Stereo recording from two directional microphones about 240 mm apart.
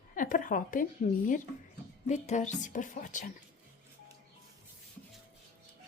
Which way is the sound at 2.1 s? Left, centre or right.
Left.